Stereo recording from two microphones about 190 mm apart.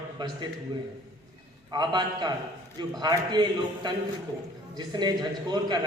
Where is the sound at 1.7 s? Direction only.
25° right (ahead or behind).